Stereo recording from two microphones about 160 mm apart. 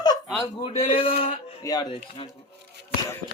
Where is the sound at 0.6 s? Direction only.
35° left (ahead or behind).